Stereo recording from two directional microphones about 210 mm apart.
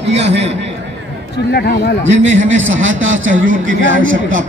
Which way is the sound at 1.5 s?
50° left (ahead or behind).